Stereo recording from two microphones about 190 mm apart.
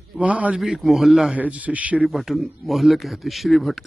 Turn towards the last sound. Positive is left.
turn(degrees=0)  # may be behind; listen again after turning